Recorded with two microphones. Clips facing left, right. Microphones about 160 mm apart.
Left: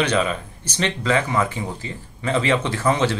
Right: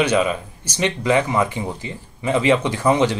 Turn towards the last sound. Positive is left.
turn(degrees=-15)  # may be behind; listen again after turning